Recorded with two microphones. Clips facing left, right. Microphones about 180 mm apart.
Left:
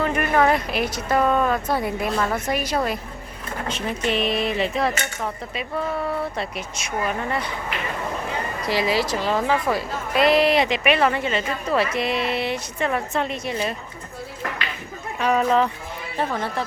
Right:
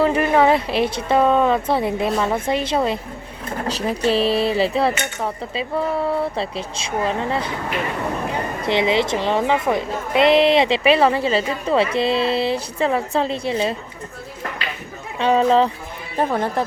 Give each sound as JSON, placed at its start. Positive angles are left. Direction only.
{"t": 0.0, "sound": "a woman's voice", "side_deg": -25}
{"t": 3.7, "sound": "a woman's voice", "side_deg": -35}
{"t": 8.6, "sound": "a woman's voice", "side_deg": -25}
{"t": 15.2, "sound": "a woman's voice", "side_deg": -30}
{"t": 16.1, "sound": "speech", "side_deg": -45}